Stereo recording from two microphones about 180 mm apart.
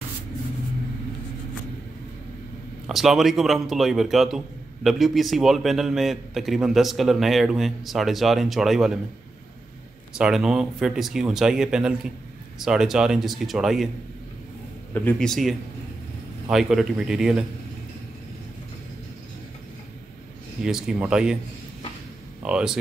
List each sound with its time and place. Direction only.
2.9 s a man's voice: centre (ahead or behind)
10.1 s a man's voice: 5° right (ahead or behind)
15.0 s a man's voice: 5° left (ahead or behind)
20.6 s a man's voice: 5° right (ahead or behind)
22.4 s a man's voice: 5° right (ahead or behind)